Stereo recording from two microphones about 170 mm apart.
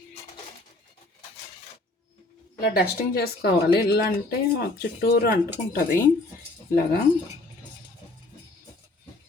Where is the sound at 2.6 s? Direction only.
65° left (ahead or behind).